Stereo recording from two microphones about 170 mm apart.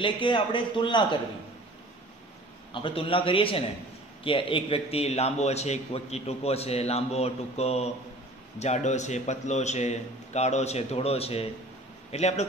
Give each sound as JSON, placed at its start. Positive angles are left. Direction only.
{"t": 0.0, "sound": "a man's voice", "side_deg": 30}
{"t": 2.7, "sound": "a man's voice", "side_deg": 30}